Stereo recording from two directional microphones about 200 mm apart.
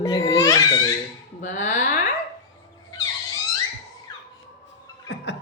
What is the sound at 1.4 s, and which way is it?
Speech, 40° left (ahead or behind).